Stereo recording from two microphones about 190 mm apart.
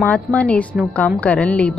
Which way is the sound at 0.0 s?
5° left (ahead or behind).